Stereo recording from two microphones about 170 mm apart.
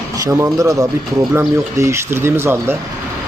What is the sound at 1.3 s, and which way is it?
Mantra, 15° right (ahead or behind).